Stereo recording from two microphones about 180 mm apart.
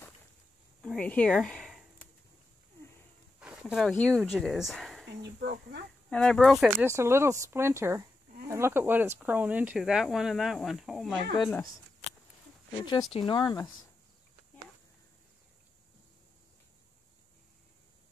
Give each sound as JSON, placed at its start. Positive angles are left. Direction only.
{"t": 0.8, "sound": "speech", "side_deg": 5}
{"t": 3.3, "sound": "a sound", "side_deg": -5}
{"t": 3.9, "sound": "speech", "side_deg": 5}
{"t": 5.2, "sound": "speech", "side_deg": -65}
{"t": 6.0, "sound": "speech", "side_deg": 5}
{"t": 6.9, "sound": "speech", "side_deg": -15}
{"t": 12.7, "sound": "speech", "side_deg": 25}